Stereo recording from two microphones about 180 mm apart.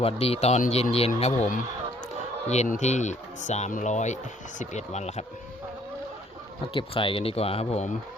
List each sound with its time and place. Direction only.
0.0 s speech: 35° left (ahead or behind)
2.5 s speech: 40° left (ahead or behind)
6.7 s speech: 30° left (ahead or behind)